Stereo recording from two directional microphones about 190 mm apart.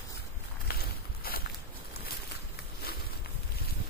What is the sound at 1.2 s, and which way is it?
Boat, 50° left (ahead or behind).